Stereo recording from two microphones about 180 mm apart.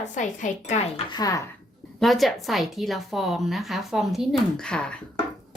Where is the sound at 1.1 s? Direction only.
20° left (ahead or behind).